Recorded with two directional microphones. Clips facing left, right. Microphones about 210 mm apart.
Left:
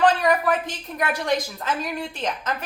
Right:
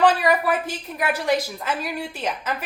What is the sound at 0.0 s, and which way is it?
A woman's voice, 5° right (ahead or behind).